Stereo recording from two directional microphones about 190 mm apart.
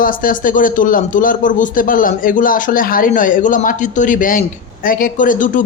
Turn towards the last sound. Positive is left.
turn(degrees=45)  # may be behind; listen again after turning